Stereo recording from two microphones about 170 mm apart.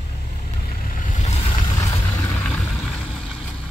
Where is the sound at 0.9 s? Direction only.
45° left (ahead or behind).